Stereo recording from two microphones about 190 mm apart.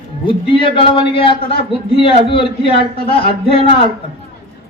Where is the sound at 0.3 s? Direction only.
25° left (ahead or behind).